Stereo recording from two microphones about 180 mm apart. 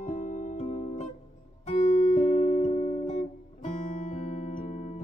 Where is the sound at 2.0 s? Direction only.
40° left (ahead or behind).